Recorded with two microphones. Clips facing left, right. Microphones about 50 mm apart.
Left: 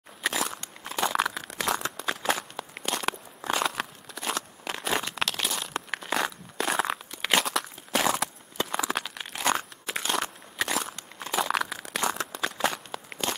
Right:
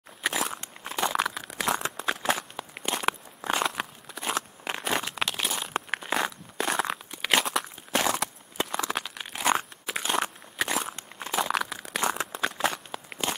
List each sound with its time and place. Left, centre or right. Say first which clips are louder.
0.2 s a sound: even; centre
1.8 s tearing: right 1 dB; centre
4.4 s crunch: right 2 dB; right
4.8 s crumpling: left 1 dB; centre
5.9 s a sound: left 1 dB; centre
8.6 s crumpling: left 3 dB; centre
9.8 s a sound: even; centre
10.6 s walk: even; centre
11.3 s crushing: even; centre
12.0 s tearing: right 1 dB; centre